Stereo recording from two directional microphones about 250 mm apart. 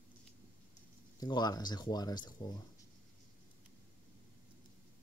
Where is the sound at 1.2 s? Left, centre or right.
Centre.